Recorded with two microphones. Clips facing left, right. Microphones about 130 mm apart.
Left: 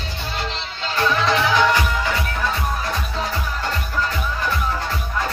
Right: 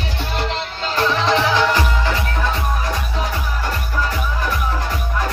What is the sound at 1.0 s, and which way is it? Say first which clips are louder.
Music: right 2 dB; 25° right (ahead or behind).